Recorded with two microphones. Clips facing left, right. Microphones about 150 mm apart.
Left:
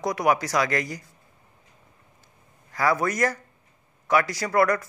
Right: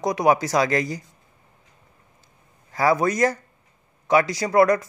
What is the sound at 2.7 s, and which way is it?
Speech, 25° right (ahead or behind).